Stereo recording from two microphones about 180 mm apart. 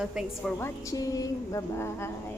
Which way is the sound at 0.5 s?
15° left (ahead or behind).